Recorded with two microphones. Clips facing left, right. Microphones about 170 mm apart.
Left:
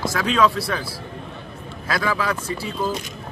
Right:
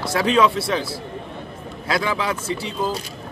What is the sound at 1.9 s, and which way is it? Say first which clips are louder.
Speech: right 1 dB; 25° right (ahead or behind).